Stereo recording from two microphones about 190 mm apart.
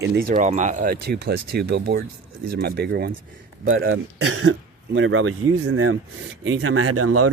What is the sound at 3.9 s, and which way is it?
Speech, 85° right.